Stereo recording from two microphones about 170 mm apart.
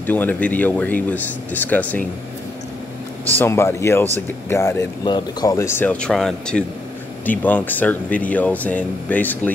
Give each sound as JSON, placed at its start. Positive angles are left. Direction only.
{"t": 0.0, "sound": "speech", "side_deg": 10}
{"t": 3.3, "sound": "speech", "side_deg": 15}